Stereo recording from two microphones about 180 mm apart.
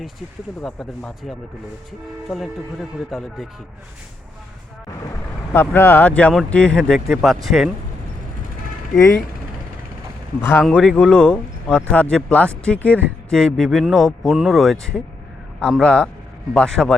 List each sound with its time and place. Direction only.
0.6 s speech: centre (ahead or behind)
5.5 s speech: 10° left (ahead or behind)
9.0 s speech: 15° left (ahead or behind)
10.4 s speech: 10° left (ahead or behind)